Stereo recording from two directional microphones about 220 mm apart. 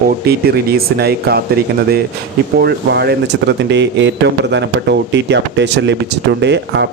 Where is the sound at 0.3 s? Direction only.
45° right (ahead or behind).